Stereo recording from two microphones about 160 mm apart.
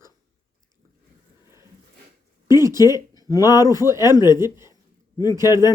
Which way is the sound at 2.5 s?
20° right (ahead or behind).